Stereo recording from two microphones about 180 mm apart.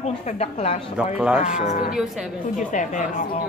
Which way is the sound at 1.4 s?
40° left (ahead or behind).